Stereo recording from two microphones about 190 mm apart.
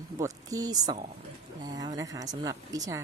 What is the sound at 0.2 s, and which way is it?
A woman's voice, 20° right (ahead or behind).